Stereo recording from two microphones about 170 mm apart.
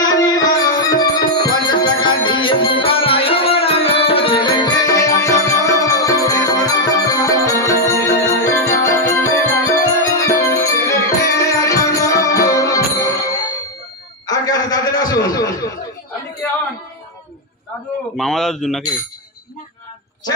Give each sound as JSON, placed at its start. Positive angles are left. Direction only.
{"t": 0.0, "sound": "music", "side_deg": 25}
{"t": 14.2, "sound": "chuckle", "side_deg": 20}
{"t": 18.1, "sound": "speech", "side_deg": 0}